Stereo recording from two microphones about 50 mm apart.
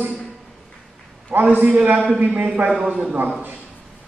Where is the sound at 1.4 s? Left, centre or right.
Right.